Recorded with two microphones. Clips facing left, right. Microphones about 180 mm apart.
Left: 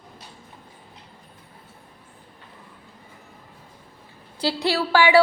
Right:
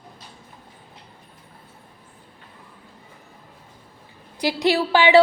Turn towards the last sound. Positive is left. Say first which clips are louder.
# right 2 dB
turn(degrees=-20)  # may be behind; listen again after turning